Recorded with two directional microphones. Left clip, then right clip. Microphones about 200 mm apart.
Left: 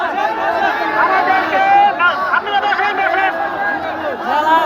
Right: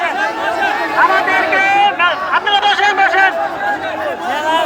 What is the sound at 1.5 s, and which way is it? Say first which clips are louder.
Chatter: left 2 dB; 60° right (ahead or behind).